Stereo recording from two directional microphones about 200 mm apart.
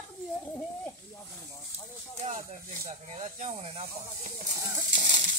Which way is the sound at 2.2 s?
30° right (ahead or behind).